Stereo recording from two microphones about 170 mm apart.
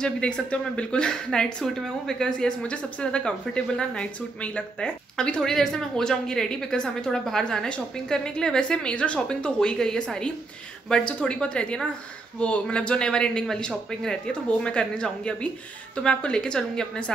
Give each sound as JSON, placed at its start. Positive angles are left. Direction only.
{"t": 0.0, "sound": "speech", "side_deg": 5}